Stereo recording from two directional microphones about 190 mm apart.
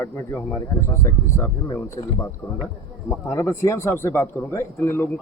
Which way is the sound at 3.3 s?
15° left (ahead or behind).